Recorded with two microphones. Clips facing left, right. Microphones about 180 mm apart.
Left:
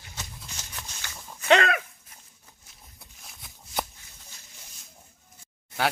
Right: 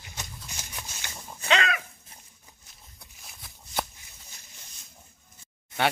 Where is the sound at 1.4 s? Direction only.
55° left (ahead or behind).